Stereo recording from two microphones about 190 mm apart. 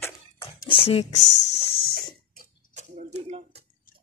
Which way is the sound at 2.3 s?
35° right (ahead or behind).